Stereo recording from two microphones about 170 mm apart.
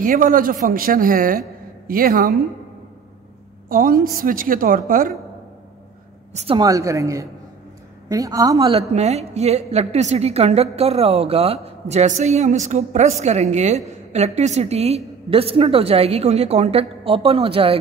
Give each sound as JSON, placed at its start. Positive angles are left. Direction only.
{"t": 0.0, "sound": "a woman's voice", "side_deg": -50}
{"t": 3.6, "sound": "a woman's voice", "side_deg": -55}
{"t": 6.3, "sound": "a woman's voice", "side_deg": -35}
{"t": 6.6, "sound": "a woman's voice", "side_deg": -20}
{"t": 8.7, "sound": "a woman's voice", "side_deg": -40}